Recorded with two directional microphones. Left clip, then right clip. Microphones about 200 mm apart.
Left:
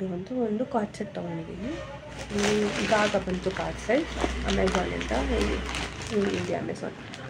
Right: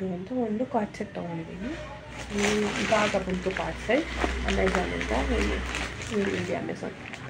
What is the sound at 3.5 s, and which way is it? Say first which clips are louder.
Speech: right 1 dB; 15° left (ahead or behind).